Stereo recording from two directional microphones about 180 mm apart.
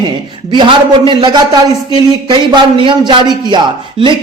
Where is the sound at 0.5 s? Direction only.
30° right (ahead or behind).